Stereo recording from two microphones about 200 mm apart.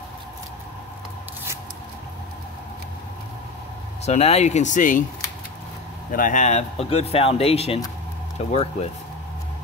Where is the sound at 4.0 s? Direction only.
30° left (ahead or behind).